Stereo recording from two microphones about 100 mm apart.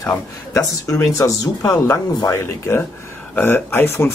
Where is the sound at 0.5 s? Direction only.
35° left (ahead or behind).